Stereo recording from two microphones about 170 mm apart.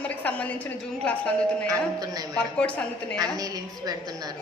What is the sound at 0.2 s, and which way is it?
Speech, 10° left (ahead or behind).